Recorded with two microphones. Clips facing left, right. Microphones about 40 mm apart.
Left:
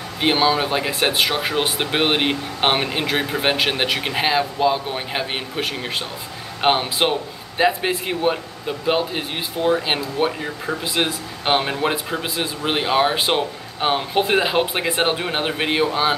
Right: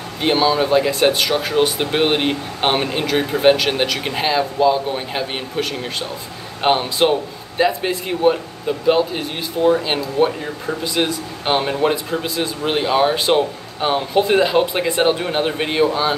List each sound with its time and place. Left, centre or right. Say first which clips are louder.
0.2 s speech: right 2 dB; centre